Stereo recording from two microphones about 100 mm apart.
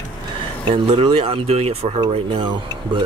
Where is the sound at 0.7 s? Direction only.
65° right (ahead or behind); by 2.0 s 90° right.